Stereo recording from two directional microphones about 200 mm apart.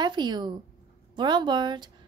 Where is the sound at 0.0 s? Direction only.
20° right (ahead or behind).